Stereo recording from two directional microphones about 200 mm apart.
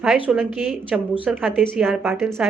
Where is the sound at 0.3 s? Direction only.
Centre (ahead or behind).